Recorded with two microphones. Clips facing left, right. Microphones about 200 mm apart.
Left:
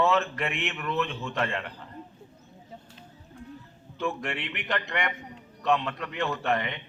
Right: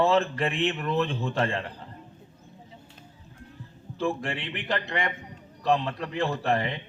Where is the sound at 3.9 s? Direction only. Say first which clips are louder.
Right 2 dB; 30° right (ahead or behind).